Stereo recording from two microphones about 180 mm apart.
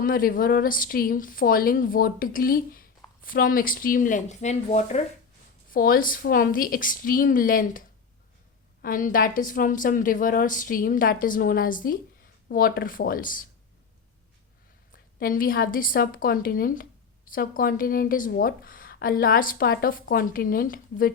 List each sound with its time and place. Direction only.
0.0 s speech: 55° left (ahead or behind)
5.7 s speech: 50° left (ahead or behind)
15.2 s speech: 50° left (ahead or behind)